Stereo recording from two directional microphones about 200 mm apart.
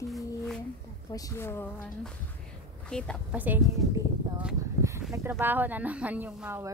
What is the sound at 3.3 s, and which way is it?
Speech, 10° right (ahead or behind).